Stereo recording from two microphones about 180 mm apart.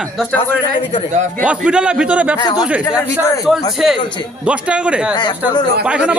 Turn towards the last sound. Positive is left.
turn(degrees=-5)  # may be behind; listen again after turning